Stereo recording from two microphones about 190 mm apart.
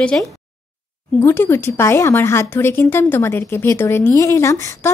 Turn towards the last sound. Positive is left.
turn(degrees=15)  # may be behind; listen again after turning